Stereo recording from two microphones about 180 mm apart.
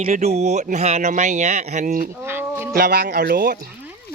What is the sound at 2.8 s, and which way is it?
Speech, 65° right (ahead or behind).